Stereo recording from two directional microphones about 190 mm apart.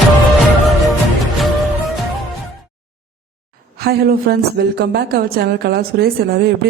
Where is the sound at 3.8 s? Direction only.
55° right (ahead or behind).